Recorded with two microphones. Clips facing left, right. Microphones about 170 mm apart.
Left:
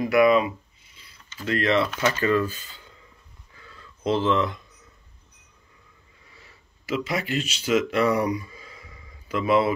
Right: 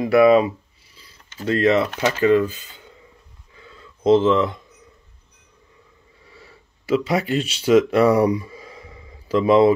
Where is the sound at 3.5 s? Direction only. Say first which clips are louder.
Right 4 dB; 25° right (ahead or behind).